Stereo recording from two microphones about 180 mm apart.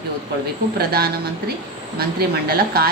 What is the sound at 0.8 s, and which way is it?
A woman's voice, 60° right (ahead or behind).